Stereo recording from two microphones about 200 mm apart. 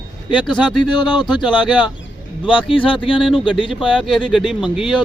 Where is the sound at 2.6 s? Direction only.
25° left (ahead or behind).